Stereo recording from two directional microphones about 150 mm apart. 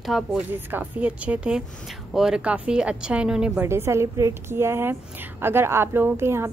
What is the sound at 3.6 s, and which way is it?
Speech, 15° right (ahead or behind).